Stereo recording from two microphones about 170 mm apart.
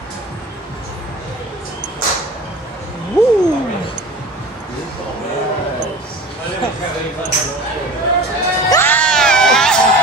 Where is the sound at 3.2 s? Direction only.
25° left (ahead or behind).